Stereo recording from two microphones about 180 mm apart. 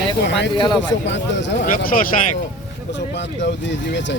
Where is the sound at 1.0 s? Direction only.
80° left.